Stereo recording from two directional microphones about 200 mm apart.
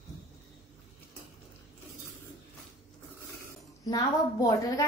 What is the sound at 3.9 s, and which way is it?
Speech, 20° left (ahead or behind).